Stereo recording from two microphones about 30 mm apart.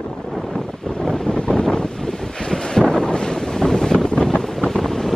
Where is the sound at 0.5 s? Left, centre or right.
Centre.